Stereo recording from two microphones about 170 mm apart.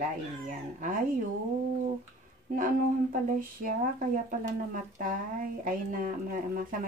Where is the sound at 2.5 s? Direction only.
55° right (ahead or behind).